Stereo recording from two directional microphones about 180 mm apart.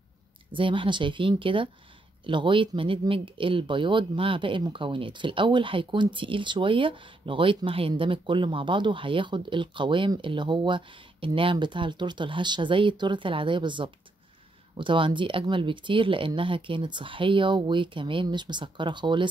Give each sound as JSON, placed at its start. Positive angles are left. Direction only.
{"t": 0.5, "sound": "speech", "side_deg": -30}